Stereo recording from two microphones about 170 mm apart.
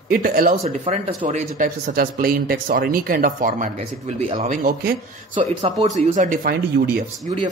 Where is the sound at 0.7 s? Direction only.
35° right (ahead or behind).